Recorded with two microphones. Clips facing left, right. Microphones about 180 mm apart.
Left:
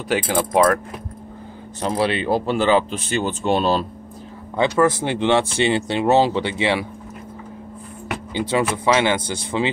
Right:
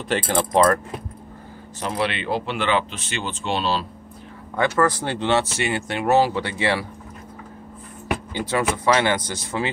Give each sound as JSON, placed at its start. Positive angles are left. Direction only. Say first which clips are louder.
{"t": 0.1, "sound": "speech", "louder": "left 1 dB", "side_deg": 10}
{"t": 1.8, "sound": "speech", "louder": "left 4 dB", "side_deg": 35}
{"t": 4.6, "sound": "speech", "louder": "left 3 dB", "side_deg": 20}
{"t": 5.6, "sound": "speech", "louder": "left 5 dB", "side_deg": 25}
{"t": 8.3, "sound": "speech", "louder": "left 4 dB", "side_deg": 20}